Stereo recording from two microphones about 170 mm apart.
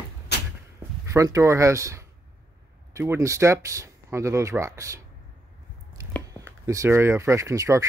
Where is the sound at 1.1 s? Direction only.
20° right (ahead or behind).